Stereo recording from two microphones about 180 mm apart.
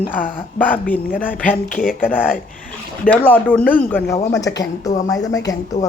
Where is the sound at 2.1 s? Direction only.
10° left (ahead or behind).